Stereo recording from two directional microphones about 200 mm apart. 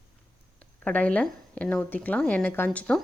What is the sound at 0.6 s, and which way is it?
A woman's voice, 5° left (ahead or behind).